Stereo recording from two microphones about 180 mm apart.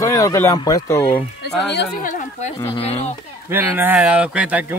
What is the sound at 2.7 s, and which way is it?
Speech, 35° left (ahead or behind).